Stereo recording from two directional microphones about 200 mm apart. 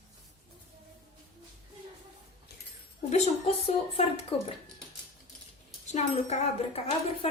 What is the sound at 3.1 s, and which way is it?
A woman's voice, 30° left (ahead or behind).